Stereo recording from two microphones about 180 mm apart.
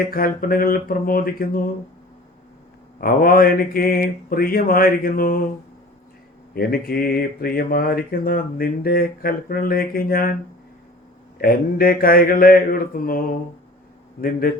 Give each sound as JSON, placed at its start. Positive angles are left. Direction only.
{"t": 0.1, "sound": "mantra", "side_deg": 55}
{"t": 3.0, "sound": "mantra", "side_deg": 55}
{"t": 6.5, "sound": "speech", "side_deg": 55}
{"t": 11.3, "sound": "mantra", "side_deg": 55}
{"t": 14.2, "sound": "mantra", "side_deg": 55}